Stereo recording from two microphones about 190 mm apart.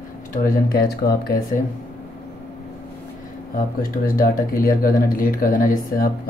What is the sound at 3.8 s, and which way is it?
Speech, 50° left (ahead or behind).